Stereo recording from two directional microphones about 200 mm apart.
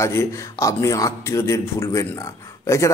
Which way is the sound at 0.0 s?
15° left (ahead or behind).